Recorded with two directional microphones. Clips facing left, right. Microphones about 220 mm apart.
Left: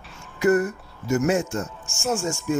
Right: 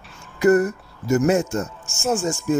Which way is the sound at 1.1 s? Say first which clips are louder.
Right 3 dB; 40° right (ahead or behind).